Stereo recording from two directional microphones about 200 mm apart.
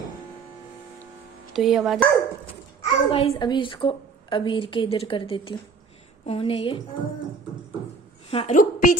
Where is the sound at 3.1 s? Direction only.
25° left (ahead or behind).